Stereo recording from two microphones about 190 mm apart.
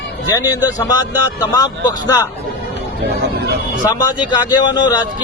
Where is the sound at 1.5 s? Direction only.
20° left (ahead or behind).